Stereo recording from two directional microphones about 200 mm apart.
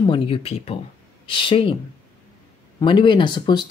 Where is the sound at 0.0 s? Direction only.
25° left (ahead or behind).